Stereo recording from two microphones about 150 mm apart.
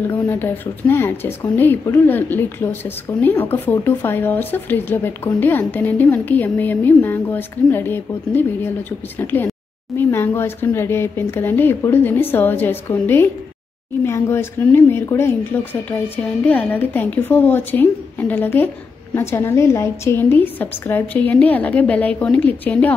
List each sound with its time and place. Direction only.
0.3 s speech: 15° left (ahead or behind)